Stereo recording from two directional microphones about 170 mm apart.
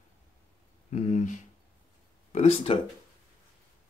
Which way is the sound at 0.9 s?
45° left (ahead or behind).